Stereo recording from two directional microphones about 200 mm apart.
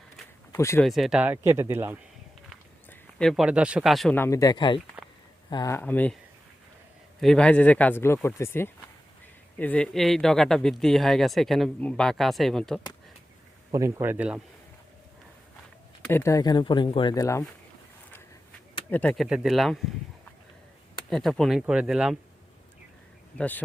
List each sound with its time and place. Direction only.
0.5 s speech: 15° left (ahead or behind)
0.9 s speech: centre (ahead or behind)
2.9 s speech: 5° left (ahead or behind)
7.2 s speech: 5° left (ahead or behind)
13.7 s speech: 15° right (ahead or behind)
16.0 s speech: 10° left (ahead or behind)
18.9 s speech: 10° left (ahead or behind)
21.1 s speech: centre (ahead or behind)
23.4 s speech: 10° left (ahead or behind)